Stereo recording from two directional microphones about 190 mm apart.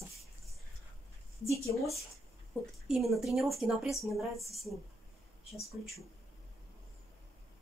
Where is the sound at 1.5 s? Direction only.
Centre (ahead or behind).